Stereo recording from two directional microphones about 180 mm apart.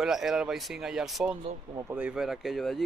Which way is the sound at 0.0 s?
Centre (ahead or behind).